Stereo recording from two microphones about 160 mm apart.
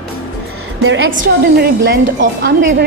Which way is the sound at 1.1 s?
65° right (ahead or behind).